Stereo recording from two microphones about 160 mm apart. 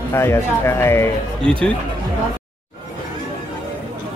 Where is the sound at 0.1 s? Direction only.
15° left (ahead or behind).